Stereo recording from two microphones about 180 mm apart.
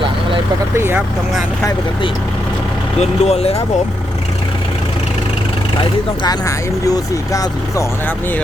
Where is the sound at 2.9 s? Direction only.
35° left (ahead or behind).